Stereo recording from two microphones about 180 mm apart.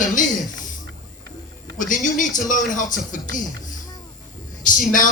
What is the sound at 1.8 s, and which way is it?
Music, 45° left (ahead or behind).